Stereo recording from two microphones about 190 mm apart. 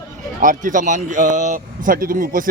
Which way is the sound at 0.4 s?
45° right (ahead or behind).